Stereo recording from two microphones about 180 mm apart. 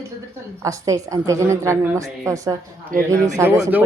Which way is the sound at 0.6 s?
20° right (ahead or behind).